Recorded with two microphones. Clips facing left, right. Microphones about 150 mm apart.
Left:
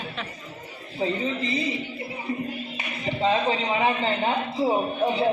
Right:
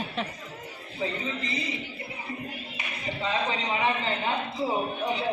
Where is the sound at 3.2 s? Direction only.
35° left (ahead or behind).